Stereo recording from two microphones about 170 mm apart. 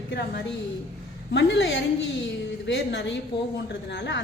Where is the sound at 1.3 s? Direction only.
90° left.